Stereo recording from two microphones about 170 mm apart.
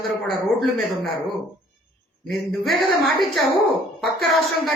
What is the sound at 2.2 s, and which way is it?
A woman's voice, centre (ahead or behind).